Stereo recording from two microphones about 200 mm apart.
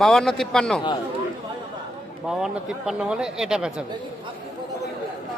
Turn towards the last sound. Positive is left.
turn(degrees=-5)  # may be behind; listen again after turning